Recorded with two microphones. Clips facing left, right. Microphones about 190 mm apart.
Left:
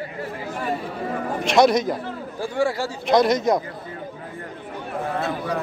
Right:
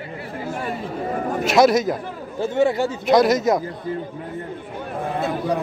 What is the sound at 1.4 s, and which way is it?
Speech, 5° right (ahead or behind).